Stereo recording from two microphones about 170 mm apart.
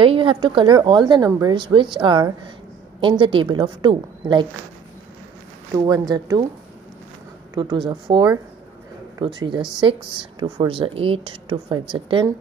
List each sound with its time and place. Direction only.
0.0 s speech: 30° right (ahead or behind)
5.7 s speech: 20° right (ahead or behind)
7.5 s speech: 25° right (ahead or behind)